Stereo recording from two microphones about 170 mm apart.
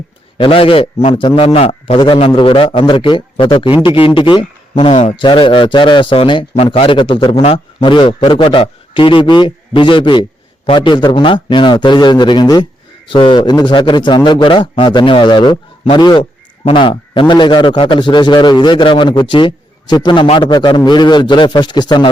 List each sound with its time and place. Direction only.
0.3 s a man's voice: 30° left (ahead or behind)